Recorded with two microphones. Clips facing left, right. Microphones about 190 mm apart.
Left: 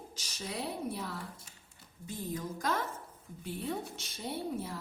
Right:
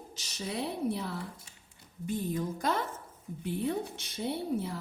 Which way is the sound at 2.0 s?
65° right (ahead or behind).